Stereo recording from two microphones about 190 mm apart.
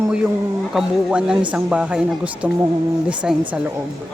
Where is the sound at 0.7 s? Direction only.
5° right (ahead or behind).